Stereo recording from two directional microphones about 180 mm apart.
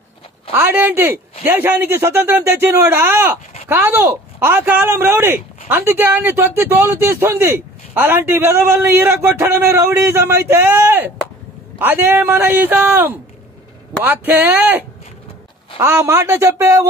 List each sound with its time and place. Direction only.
0.5 s speech: 10° right (ahead or behind)